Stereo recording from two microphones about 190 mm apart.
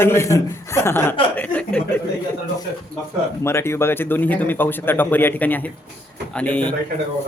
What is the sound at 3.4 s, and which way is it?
A man's voice, 15° left (ahead or behind).